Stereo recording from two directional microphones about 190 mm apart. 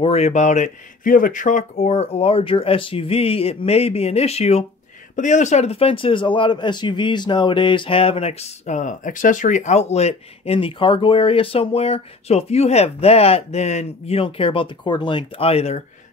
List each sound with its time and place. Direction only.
0.0 s speech: 35° left (ahead or behind)